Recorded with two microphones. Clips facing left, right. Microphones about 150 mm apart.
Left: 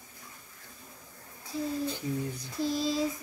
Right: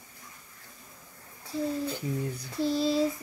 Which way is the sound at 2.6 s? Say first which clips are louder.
Right 3 dB; 30° right (ahead or behind).